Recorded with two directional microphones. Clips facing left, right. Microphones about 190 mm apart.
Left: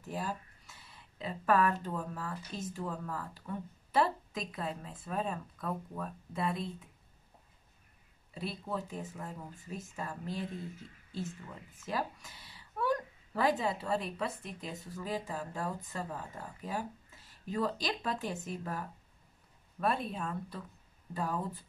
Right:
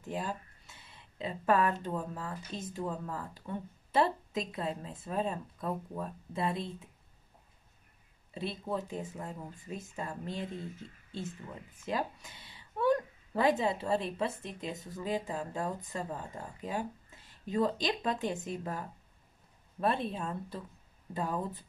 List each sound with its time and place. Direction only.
0.1 s speech: 20° right (ahead or behind)
8.4 s speech: 20° right (ahead or behind)
11.8 s a woman's voice: 20° right (ahead or behind)